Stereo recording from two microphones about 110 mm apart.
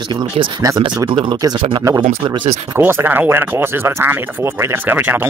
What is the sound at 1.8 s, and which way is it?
Speech, 30° right (ahead or behind).